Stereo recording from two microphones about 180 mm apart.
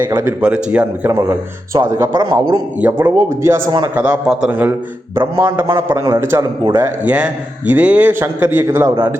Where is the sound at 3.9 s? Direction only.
5° right (ahead or behind).